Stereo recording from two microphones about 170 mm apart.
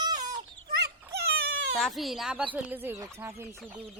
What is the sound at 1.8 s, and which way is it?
Speech, centre (ahead or behind).